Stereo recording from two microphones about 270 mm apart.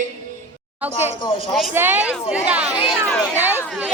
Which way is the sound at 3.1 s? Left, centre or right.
Centre.